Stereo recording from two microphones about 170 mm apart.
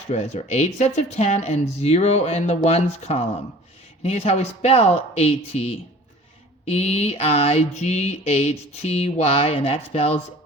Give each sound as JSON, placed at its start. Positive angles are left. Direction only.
{"t": 0.1, "sound": "mantra", "side_deg": 40}